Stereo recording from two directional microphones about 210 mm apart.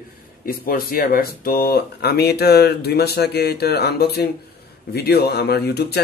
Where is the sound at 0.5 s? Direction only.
45° left (ahead or behind).